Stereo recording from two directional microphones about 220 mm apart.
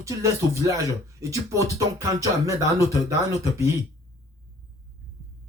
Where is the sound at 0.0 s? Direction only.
15° right (ahead or behind).